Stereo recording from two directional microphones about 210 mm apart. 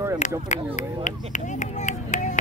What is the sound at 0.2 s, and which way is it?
Speech, 35° left (ahead or behind).